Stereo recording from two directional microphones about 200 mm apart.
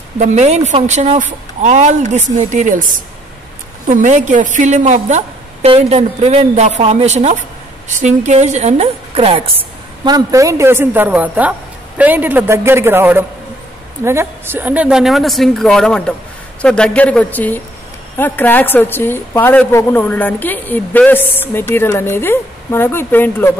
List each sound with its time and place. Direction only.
0.2 s a woman's voice: 35° right (ahead or behind)
10.0 s a woman's voice: 15° right (ahead or behind); by 23.5 s 10° left (ahead or behind)